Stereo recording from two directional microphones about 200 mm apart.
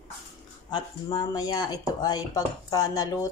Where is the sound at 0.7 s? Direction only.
20° left (ahead or behind).